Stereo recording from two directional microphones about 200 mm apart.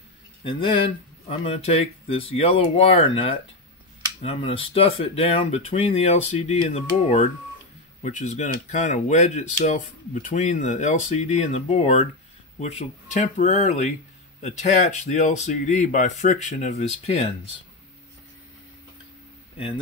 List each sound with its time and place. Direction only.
0.4 s speech: 25° left (ahead or behind)